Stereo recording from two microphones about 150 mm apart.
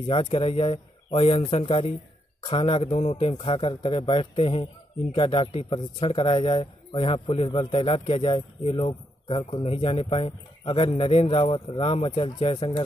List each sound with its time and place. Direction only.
0.0 s a man's voice: 40° left (ahead or behind)